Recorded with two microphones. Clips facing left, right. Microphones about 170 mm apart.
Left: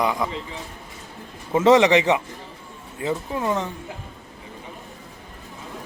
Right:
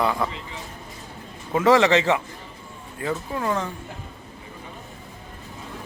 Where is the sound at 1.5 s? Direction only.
20° left (ahead or behind).